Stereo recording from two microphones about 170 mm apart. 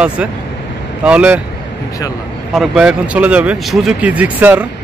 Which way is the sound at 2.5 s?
5° right (ahead or behind).